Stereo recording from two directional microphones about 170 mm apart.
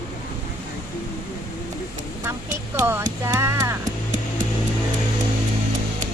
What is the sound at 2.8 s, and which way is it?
Speech, 15° right (ahead or behind).